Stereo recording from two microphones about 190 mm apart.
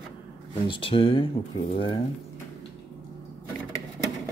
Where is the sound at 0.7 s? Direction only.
25° left (ahead or behind).